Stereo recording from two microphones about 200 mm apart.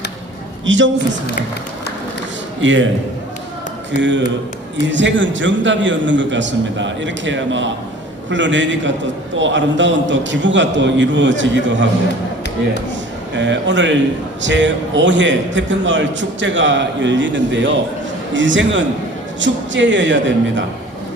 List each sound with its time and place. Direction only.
0.6 s a man's voice: 70° right (ahead or behind)
2.6 s a man's voice: 65° right (ahead or behind)
3.9 s a man's voice: 65° right (ahead or behind)
13.3 s a man's voice: 65° right (ahead or behind)